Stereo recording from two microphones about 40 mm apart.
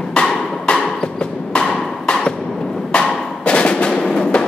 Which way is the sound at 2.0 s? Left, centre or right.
Left.